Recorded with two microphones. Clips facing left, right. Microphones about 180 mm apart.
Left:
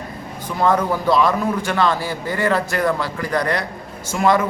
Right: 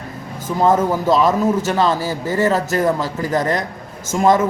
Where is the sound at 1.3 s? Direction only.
20° right (ahead or behind).